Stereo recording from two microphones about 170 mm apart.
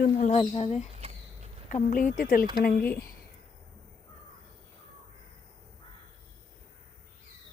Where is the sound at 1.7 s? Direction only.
50° left (ahead or behind).